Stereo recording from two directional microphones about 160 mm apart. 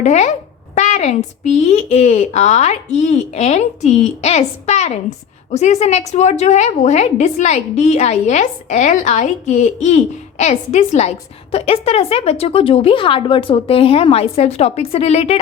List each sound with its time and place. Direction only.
0.0 s a woman's voice: 45° left (ahead or behind)